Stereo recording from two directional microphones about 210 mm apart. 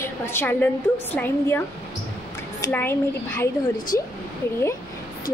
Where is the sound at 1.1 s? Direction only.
10° left (ahead or behind).